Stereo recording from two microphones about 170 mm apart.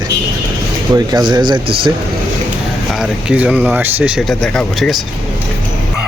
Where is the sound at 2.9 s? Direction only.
5° right (ahead or behind).